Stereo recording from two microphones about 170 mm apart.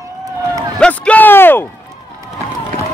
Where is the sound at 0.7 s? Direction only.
5° left (ahead or behind).